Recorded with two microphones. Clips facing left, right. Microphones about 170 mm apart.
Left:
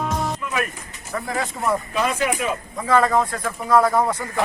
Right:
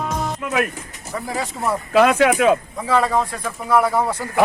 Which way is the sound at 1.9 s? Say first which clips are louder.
Right 8 dB; 85° right.